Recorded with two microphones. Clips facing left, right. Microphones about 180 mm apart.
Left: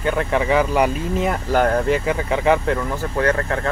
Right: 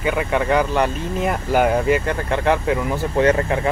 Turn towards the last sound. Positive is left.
turn(degrees=-15)  # may be behind; listen again after turning